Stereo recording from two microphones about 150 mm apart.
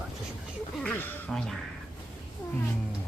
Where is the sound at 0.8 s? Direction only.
5° left (ahead or behind).